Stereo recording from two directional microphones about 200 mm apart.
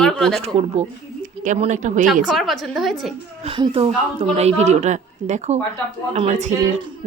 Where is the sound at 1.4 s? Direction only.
35° right (ahead or behind).